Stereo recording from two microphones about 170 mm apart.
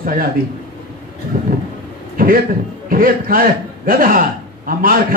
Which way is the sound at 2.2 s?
55° right (ahead or behind).